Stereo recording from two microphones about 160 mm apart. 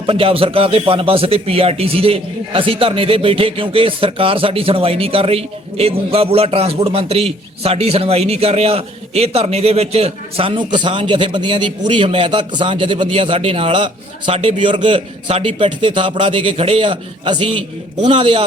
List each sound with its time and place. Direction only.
0.0 s a man's voice: 35° right (ahead or behind)